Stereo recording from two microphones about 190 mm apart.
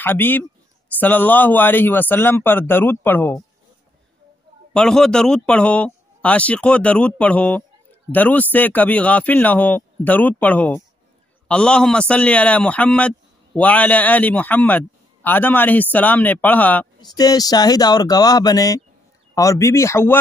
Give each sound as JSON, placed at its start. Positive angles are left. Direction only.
{"t": 0.0, "sound": "a man's voice", "side_deg": 10}
{"t": 4.7, "sound": "a man's voice", "side_deg": 5}
{"t": 17.0, "sound": "a man's voice", "side_deg": 20}